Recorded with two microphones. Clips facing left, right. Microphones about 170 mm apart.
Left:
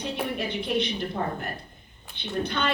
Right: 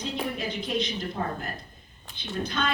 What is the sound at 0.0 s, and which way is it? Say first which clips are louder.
Speech: left 1 dB; 65° left (ahead or behind).